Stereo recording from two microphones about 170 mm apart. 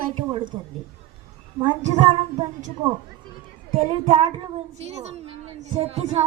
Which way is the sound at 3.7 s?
35° right (ahead or behind).